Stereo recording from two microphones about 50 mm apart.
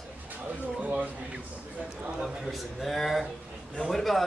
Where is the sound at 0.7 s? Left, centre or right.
Right.